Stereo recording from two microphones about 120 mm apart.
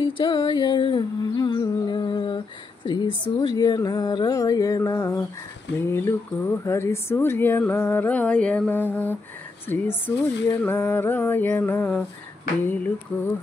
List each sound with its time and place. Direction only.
0.0 s music: 45° left (ahead or behind); by 5.2 s 30° left (ahead or behind)
5.8 s speech: 20° left (ahead or behind)